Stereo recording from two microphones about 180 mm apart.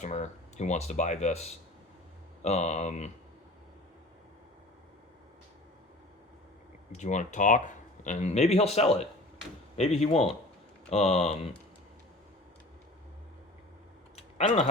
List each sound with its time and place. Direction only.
0.0 s speech: 40° left (ahead or behind)
6.9 s speech: 40° left (ahead or behind)
14.2 s typing: 35° left (ahead or behind)